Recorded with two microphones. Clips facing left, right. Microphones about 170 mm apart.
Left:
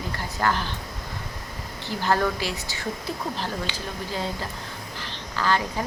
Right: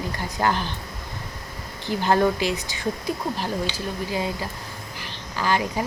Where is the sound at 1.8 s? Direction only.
20° right (ahead or behind).